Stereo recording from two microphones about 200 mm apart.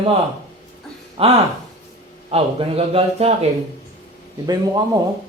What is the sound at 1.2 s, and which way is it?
A man's voice, 30° right (ahead or behind).